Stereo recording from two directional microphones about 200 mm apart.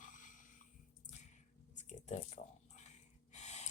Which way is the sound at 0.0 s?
40° left (ahead or behind).